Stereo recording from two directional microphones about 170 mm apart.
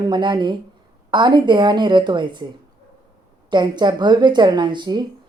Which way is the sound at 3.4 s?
25° right (ahead or behind).